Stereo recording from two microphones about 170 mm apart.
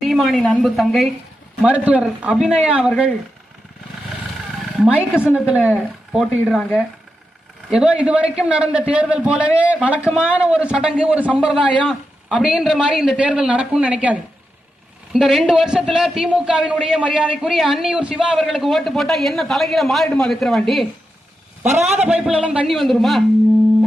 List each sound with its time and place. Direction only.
0.0 s a man's voice: centre (ahead or behind)
4.8 s a man's voice: 5° right (ahead or behind)
21.8 s a man's voice: 40° right (ahead or behind)
22.0 s a man's voice: 5° right (ahead or behind)